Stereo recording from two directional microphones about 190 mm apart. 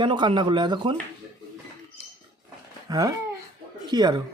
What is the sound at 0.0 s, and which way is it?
Speech, 25° right (ahead or behind).